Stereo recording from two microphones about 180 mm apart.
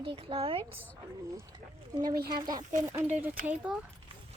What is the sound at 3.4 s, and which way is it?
Speech, 10° right (ahead or behind).